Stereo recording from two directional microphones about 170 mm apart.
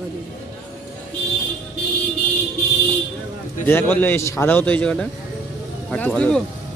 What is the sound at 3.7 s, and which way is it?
A man's voice, 10° left (ahead or behind).